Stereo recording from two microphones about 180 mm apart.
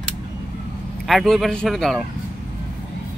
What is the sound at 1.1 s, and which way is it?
A man's voice, centre (ahead or behind).